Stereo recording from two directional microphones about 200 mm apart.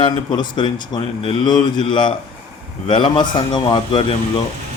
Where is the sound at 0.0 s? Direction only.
20° left (ahead or behind).